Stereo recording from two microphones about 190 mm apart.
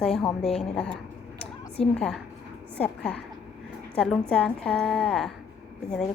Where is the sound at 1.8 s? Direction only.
30° left (ahead or behind).